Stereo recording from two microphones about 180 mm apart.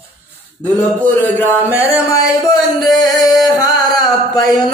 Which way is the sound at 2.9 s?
20° left (ahead or behind).